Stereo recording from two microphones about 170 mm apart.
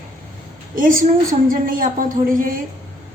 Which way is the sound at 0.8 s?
55° right (ahead or behind).